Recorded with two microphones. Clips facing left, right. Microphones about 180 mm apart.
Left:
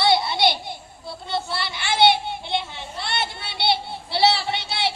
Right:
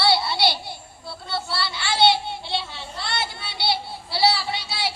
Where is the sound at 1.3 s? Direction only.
20° left (ahead or behind).